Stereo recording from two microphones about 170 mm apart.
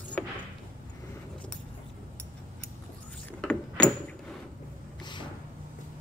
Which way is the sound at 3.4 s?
5° left (ahead or behind).